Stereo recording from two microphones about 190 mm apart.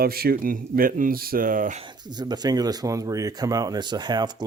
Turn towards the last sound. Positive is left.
turn(degrees=-20)  # may be behind; listen again after turning